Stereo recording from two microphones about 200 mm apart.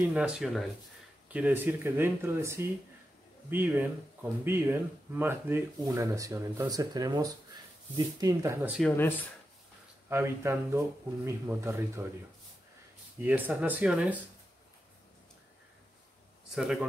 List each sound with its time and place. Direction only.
0.0 s speech: 5° right (ahead or behind)
8.7 s speech: 10° left (ahead or behind)
10.0 s speech: 10° right (ahead or behind)
13.2 s speech: 10° right (ahead or behind)
16.5 s speech: centre (ahead or behind)